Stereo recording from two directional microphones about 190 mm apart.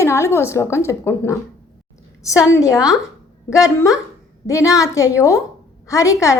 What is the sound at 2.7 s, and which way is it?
Speech, centre (ahead or behind).